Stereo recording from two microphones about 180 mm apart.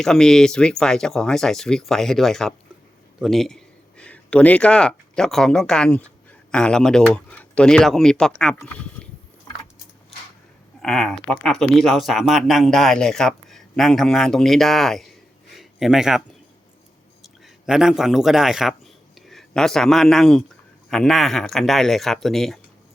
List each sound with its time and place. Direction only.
0.0 s speech: 5° left (ahead or behind)
10.8 s speech: centre (ahead or behind)
15.4 s a sound: centre (ahead or behind)
17.2 s a man's voice: centre (ahead or behind)